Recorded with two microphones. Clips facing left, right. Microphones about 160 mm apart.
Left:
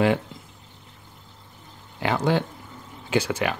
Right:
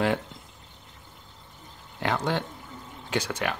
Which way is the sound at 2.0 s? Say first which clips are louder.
Left 4 dB; 5° left (ahead or behind).